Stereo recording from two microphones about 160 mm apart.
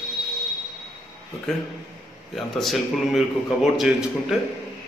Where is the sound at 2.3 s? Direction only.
Centre (ahead or behind).